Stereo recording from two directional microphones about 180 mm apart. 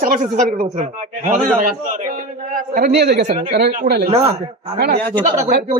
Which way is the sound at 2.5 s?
55° right (ahead or behind).